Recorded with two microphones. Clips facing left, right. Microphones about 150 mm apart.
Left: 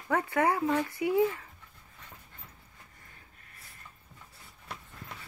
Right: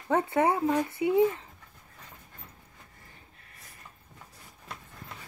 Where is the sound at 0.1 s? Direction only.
25° right (ahead or behind).